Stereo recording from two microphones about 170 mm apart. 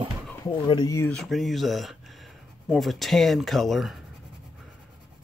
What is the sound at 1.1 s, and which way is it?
Speech, centre (ahead or behind).